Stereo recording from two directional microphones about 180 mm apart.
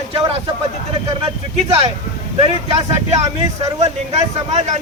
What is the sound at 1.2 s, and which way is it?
Speech, 35° right (ahead or behind).